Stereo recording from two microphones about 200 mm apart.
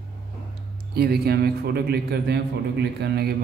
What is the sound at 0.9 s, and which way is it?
A man's voice, 50° right (ahead or behind).